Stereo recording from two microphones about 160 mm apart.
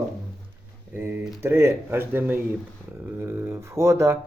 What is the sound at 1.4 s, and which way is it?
Speech, 15° right (ahead or behind).